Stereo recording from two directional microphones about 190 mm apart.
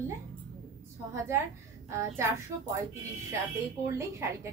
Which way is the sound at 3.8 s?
15° right (ahead or behind).